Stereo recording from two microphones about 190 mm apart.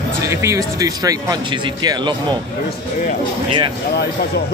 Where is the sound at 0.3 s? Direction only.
15° right (ahead or behind).